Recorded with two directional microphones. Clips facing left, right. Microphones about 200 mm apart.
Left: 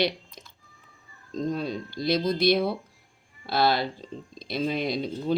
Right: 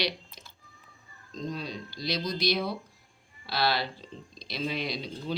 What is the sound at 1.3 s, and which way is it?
Speech, 50° left (ahead or behind).